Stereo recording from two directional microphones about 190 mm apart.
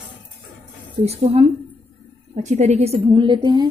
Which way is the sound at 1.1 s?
35° right (ahead or behind).